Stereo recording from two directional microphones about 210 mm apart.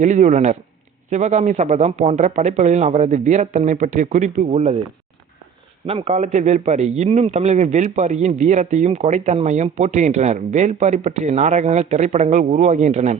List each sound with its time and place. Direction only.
0.0 s a man's voice: 35° right (ahead or behind)
5.8 s a man's voice: 30° right (ahead or behind)